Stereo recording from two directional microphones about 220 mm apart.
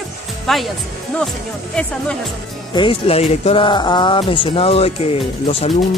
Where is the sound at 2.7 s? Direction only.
20° left (ahead or behind).